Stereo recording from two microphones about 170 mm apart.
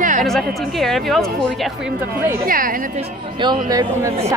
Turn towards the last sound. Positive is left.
turn(degrees=-20)  # may be behind; listen again after turning